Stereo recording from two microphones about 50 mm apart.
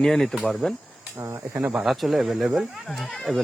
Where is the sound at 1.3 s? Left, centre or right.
Right.